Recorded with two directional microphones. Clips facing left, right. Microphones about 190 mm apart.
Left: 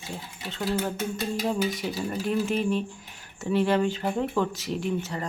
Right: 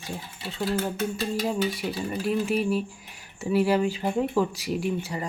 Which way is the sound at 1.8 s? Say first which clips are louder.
Even; 5° right (ahead or behind).